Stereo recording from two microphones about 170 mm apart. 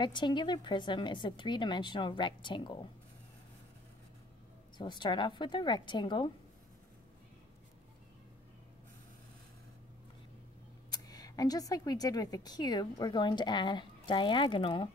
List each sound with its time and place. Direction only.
0.0 s speech: 25° left (ahead or behind)
4.7 s speech: 25° left (ahead or behind)
10.9 s speech: 20° left (ahead or behind)